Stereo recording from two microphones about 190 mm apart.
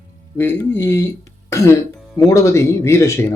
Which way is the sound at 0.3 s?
10° left (ahead or behind).